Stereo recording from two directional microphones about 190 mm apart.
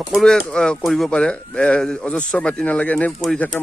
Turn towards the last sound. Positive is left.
turn(degrees=5)  # may be behind; listen again after turning